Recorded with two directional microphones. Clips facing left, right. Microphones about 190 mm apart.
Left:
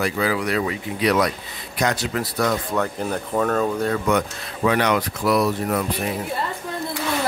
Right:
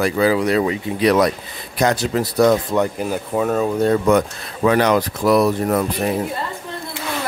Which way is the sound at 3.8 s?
40° right (ahead or behind).